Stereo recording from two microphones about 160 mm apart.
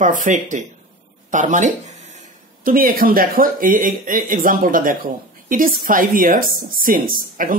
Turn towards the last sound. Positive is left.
turn(degrees=-60)  # may be behind; listen again after turning